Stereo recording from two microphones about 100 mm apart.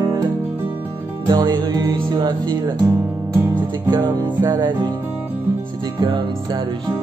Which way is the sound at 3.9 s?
45° right (ahead or behind).